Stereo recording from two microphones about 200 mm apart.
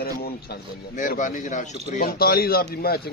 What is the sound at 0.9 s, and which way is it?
A man's voice, 40° left (ahead or behind).